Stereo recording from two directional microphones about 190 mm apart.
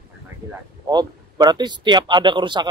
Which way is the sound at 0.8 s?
20° right (ahead or behind).